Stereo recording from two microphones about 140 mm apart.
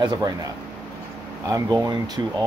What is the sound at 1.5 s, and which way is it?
Speech, 25° right (ahead or behind).